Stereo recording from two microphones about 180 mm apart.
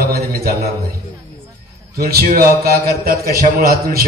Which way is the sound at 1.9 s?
60° right (ahead or behind).